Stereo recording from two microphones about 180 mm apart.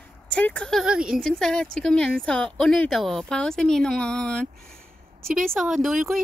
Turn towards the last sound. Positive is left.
turn(degrees=0)  # may be behind; listen again after turning